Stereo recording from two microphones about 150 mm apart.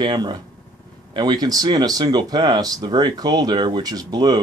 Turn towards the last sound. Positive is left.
turn(degrees=-30)  # may be behind; listen again after turning